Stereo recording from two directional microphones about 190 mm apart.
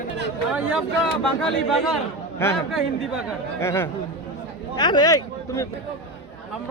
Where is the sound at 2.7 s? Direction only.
Centre (ahead or behind).